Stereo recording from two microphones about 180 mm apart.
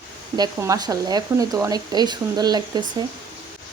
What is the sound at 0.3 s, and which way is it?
Speech, 20° right (ahead or behind).